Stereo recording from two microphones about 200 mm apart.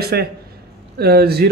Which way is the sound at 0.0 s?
50° right (ahead or behind).